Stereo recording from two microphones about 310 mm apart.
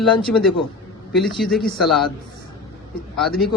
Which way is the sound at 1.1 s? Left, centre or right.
Centre.